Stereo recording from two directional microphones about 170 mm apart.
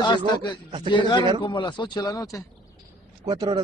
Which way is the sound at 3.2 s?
25° right (ahead or behind).